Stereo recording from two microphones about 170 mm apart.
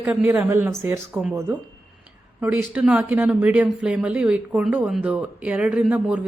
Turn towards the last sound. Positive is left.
turn(degrees=-10)  # may be behind; listen again after turning